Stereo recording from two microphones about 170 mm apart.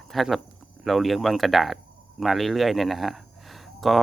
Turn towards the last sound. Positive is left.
turn(degrees=0)  # may be behind; listen again after turning